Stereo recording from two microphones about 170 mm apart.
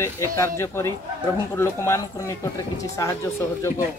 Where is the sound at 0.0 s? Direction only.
15° left (ahead or behind).